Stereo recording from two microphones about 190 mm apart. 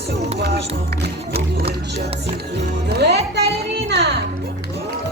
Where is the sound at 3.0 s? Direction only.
60° right (ahead or behind).